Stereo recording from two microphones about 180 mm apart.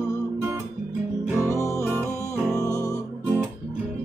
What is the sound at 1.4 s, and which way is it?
Music, 15° left (ahead or behind).